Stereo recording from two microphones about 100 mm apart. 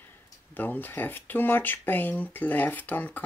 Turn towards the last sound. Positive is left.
turn(degrees=15)  # may be behind; listen again after turning